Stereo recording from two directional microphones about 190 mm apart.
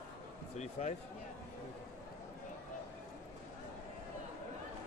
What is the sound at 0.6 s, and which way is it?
Speech, 35° left (ahead or behind).